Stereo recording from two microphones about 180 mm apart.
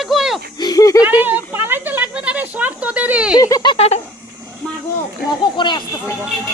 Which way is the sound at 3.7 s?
35° left (ahead or behind).